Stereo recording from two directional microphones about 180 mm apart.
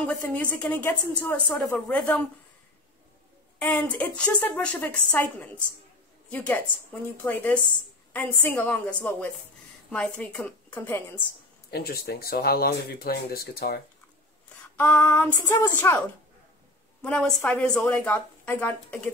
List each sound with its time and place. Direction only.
0.0 s a woman's voice: 10° left (ahead or behind)
3.5 s a woman's voice: 10° left (ahead or behind)
11.7 s speech: 60° left (ahead or behind)
14.8 s a woman's voice: 10° left (ahead or behind)
17.0 s a woman's voice: 5° left (ahead or behind)